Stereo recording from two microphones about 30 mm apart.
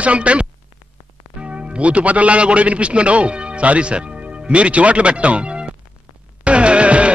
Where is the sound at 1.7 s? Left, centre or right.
Right.